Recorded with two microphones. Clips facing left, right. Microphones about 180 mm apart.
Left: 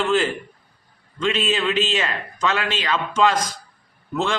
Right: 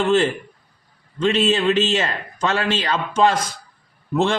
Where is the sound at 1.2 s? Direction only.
35° right (ahead or behind).